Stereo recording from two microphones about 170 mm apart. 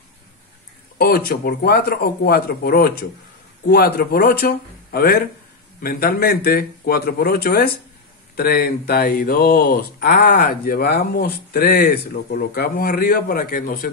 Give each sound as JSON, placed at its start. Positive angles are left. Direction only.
{"t": 0.9, "sound": "speech", "side_deg": 65}